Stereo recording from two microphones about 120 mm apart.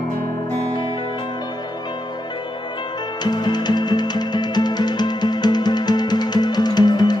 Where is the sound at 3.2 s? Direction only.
35° left (ahead or behind).